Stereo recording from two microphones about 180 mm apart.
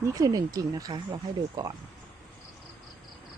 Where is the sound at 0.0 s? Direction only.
20° right (ahead or behind).